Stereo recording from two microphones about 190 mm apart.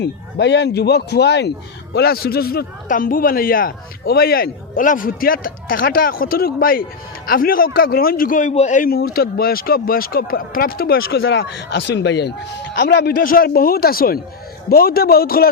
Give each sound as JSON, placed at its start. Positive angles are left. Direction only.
{"t": 0.0, "sound": "speech", "side_deg": 65}
{"t": 11.2, "sound": "speech", "side_deg": 75}